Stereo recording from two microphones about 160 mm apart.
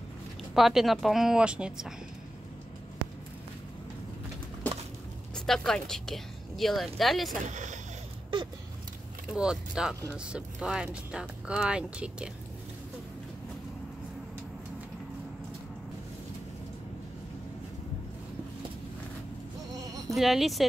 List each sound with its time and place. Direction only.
0.6 s a woman's voice: centre (ahead or behind)
4.6 s a sound: 10° left (ahead or behind)
5.3 s speech: 5° left (ahead or behind)
7.4 s speech: 50° right (ahead or behind)
9.3 s a woman's voice: 5° right (ahead or behind)
20.2 s a woman's voice: centre (ahead or behind)